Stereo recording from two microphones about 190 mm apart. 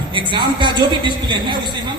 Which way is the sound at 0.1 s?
25° right (ahead or behind).